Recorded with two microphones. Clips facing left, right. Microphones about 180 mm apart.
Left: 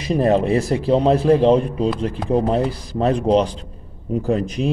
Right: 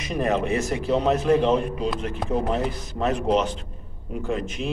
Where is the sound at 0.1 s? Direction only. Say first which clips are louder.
Left 7 dB; 30° left (ahead or behind).